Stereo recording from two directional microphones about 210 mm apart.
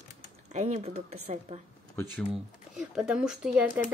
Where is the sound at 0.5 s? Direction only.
30° right (ahead or behind).